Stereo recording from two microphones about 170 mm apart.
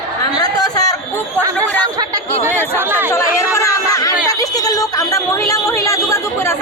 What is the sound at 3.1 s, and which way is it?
Chatter, 15° left (ahead or behind).